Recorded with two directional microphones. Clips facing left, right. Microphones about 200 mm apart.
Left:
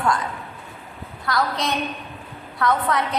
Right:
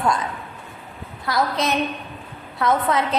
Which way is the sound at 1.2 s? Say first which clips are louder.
Right 2 dB; 20° right (ahead or behind).